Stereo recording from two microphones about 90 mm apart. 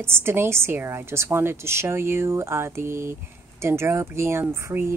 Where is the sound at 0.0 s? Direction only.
25° right (ahead or behind).